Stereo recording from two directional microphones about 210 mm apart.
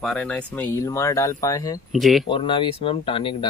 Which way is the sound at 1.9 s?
Centre (ahead or behind).